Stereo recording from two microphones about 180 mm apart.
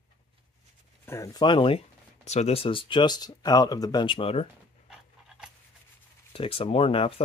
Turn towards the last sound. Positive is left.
turn(degrees=30)  # may be behind; listen again after turning